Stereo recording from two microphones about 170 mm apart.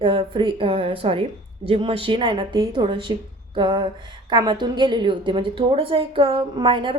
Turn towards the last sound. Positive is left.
turn(degrees=-30)  # may be behind; listen again after turning